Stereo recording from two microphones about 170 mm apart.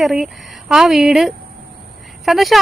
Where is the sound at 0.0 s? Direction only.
Centre (ahead or behind).